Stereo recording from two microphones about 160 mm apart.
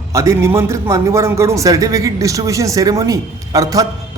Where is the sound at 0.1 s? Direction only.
20° right (ahead or behind).